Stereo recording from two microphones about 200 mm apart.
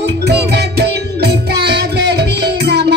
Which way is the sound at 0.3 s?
55° right (ahead or behind).